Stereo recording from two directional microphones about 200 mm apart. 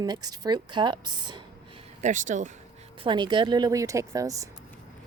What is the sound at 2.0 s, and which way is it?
Speech, 40° right (ahead or behind).